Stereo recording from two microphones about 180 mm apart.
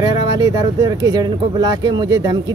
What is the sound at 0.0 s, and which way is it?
Speech, 25° right (ahead or behind).